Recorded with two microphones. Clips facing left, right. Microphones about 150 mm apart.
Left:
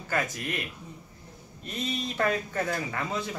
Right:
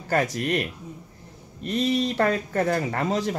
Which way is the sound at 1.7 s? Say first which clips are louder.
Right 10 dB; 75° right (ahead or behind).